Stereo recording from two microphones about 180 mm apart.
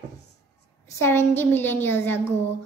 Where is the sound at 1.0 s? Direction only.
10° left (ahead or behind).